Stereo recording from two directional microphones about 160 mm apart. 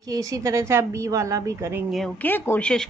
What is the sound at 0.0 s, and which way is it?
Speech, 20° right (ahead or behind).